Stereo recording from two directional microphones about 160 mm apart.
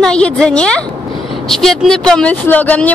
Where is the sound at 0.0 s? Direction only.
5° left (ahead or behind).